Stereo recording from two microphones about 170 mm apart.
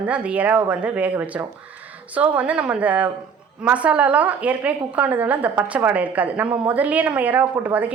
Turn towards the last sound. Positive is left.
turn(degrees=-10)  # may be behind; listen again after turning